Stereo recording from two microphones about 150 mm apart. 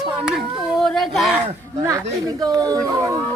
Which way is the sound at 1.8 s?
20° right (ahead or behind).